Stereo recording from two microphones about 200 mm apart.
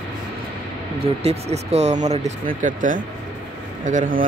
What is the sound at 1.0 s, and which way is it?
Speech, 30° right (ahead or behind).